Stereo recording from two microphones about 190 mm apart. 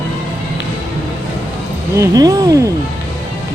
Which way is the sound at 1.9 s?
15° right (ahead or behind).